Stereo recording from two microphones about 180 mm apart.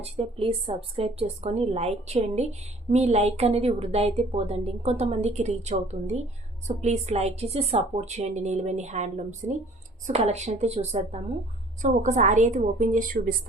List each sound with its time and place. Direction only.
0.0 s a woman's voice: 30° right (ahead or behind)